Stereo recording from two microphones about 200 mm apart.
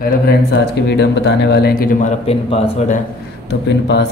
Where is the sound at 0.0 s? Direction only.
55° left (ahead or behind); by 3.0 s 30° left (ahead or behind).